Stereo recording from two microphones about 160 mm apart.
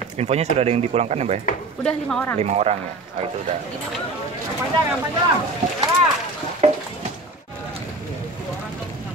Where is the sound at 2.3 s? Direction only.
45° right (ahead or behind).